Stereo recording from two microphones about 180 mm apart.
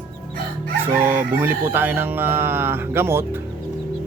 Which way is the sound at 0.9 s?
15° right (ahead or behind).